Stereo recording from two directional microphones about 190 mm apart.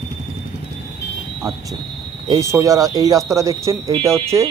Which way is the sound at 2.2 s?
15° right (ahead or behind).